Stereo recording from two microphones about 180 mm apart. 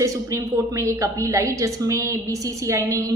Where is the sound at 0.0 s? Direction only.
15° right (ahead or behind).